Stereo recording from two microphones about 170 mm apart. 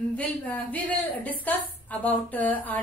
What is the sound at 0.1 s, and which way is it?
A woman's voice, 10° left (ahead or behind).